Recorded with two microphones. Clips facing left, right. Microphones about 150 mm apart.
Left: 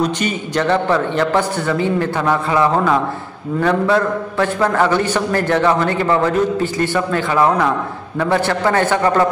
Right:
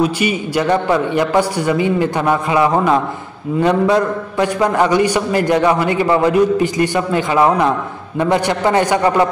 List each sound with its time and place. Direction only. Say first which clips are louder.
0.0 s a man's voice: right 3 dB; 10° right (ahead or behind)